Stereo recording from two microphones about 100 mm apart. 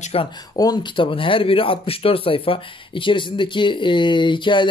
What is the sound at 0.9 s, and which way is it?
Speech, 60° left (ahead or behind).